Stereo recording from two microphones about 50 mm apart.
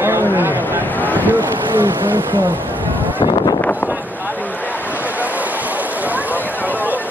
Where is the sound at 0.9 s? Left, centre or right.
Left.